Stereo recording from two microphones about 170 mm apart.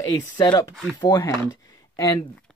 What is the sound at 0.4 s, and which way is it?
Speech, 20° left (ahead or behind).